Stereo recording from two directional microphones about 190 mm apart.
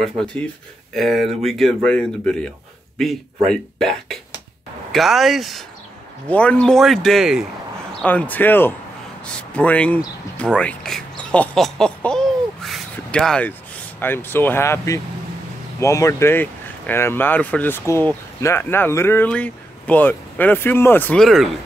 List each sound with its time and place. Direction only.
0.0 s speech: centre (ahead or behind)